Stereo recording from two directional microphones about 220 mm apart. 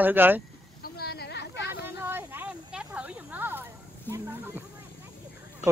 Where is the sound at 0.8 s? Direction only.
45° left (ahead or behind).